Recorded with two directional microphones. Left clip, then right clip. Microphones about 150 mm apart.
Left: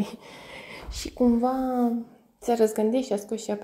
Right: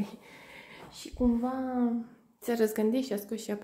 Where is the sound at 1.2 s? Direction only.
20° left (ahead or behind).